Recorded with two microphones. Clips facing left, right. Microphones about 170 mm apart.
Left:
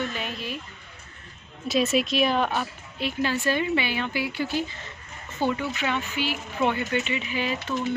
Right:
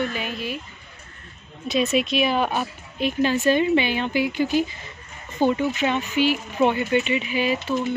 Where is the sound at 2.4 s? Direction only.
15° right (ahead or behind).